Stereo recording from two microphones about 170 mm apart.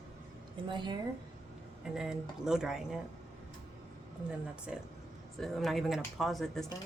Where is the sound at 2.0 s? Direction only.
5° right (ahead or behind).